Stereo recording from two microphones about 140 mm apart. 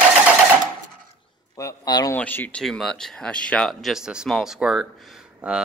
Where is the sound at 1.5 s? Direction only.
25° left (ahead or behind).